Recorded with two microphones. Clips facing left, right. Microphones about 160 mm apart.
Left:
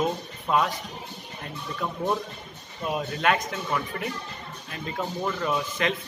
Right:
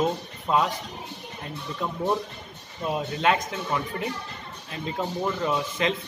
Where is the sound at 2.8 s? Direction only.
25° right (ahead or behind).